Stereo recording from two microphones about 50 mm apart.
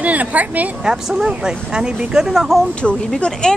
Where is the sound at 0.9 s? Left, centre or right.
Centre.